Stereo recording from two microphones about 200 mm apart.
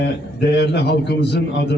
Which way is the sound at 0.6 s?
55° left (ahead or behind).